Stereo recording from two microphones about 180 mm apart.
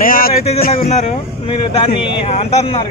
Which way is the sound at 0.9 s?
40° left (ahead or behind).